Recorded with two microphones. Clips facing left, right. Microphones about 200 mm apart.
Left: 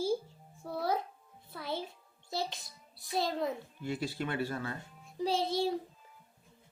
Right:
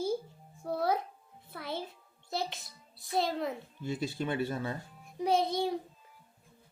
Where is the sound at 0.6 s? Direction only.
55° right (ahead or behind).